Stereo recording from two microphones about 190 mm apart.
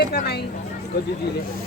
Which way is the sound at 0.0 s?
55° left (ahead or behind).